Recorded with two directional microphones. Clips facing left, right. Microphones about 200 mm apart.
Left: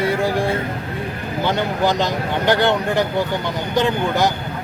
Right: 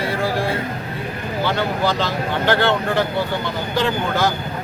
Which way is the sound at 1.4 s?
20° left (ahead or behind).